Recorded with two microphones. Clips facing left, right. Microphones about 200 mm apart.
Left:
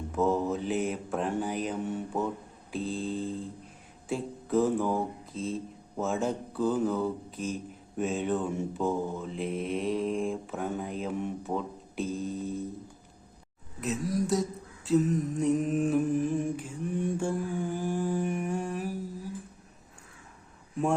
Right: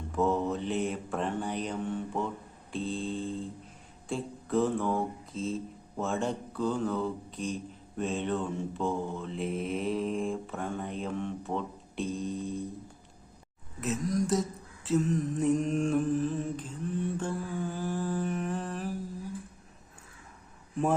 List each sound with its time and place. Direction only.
0.1 s mantra: centre (ahead or behind)
2.7 s speech: centre (ahead or behind)
13.8 s speech: centre (ahead or behind)
14.8 s mantra: centre (ahead or behind)